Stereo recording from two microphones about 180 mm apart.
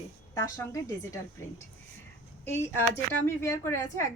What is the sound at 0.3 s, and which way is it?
Speech, 15° left (ahead or behind).